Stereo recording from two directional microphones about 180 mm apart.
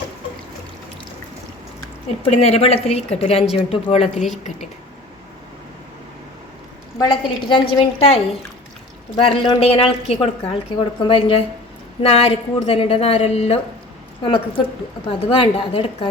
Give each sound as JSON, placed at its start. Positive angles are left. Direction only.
{"t": 2.3, "sound": "a woman's voice", "side_deg": 35}
{"t": 7.0, "sound": "a woman's voice", "side_deg": 25}